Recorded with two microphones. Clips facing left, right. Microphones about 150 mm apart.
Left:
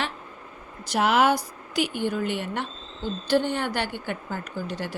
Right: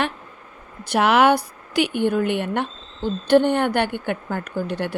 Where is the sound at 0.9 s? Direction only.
65° right (ahead or behind).